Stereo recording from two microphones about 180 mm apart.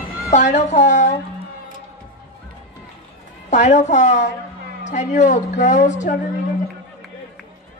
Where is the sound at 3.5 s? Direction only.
40° left (ahead or behind).